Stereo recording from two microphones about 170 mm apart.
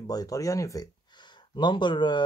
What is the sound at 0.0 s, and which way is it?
Speech, 20° left (ahead or behind).